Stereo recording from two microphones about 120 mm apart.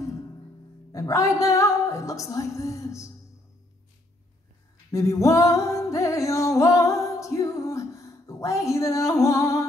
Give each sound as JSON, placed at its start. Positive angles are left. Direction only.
{"t": 0.9, "sound": "music", "side_deg": 25}
{"t": 4.9, "sound": "music", "side_deg": 25}